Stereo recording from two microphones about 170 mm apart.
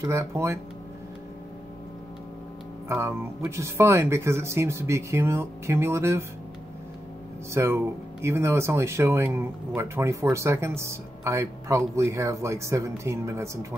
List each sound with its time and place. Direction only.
0.0 s speech: 15° right (ahead or behind)
2.9 s speech: 15° right (ahead or behind)
7.5 s speech: 15° right (ahead or behind)